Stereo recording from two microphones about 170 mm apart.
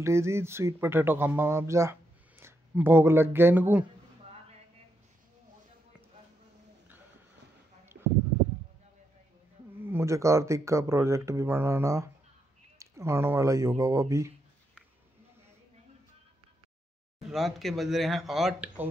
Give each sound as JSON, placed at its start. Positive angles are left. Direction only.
{"t": 0.0, "sound": "speech", "side_deg": -15}
{"t": 9.8, "sound": "speech", "side_deg": -15}
{"t": 17.3, "sound": "speech", "side_deg": 0}